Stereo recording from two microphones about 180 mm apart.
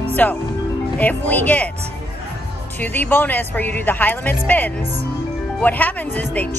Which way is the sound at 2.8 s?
10° left (ahead or behind).